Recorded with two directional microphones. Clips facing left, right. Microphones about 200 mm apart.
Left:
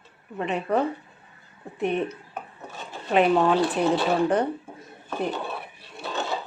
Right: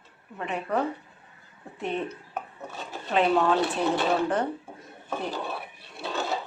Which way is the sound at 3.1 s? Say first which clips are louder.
Left 3 dB; 15° left (ahead or behind).